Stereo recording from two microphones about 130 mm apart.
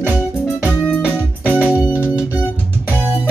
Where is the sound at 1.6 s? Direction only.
10° right (ahead or behind).